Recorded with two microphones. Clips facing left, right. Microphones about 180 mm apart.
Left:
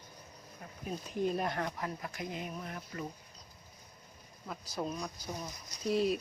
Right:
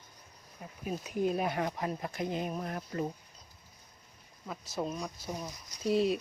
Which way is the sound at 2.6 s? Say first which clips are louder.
Right 6 dB; 45° right (ahead or behind).